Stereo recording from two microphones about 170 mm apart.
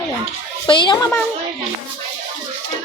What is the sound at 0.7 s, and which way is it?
Speech, 30° left (ahead or behind).